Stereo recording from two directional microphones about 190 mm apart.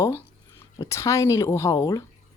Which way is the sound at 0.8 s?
15° left (ahead or behind).